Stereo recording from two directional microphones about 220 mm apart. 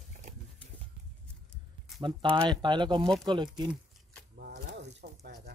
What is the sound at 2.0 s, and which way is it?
Speech, 20° right (ahead or behind).